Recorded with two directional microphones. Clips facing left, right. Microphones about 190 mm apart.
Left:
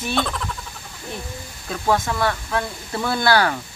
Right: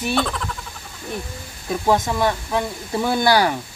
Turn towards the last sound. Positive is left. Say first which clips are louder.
# right 2 dB
turn(degrees=-15)  # may be behind; listen again after turning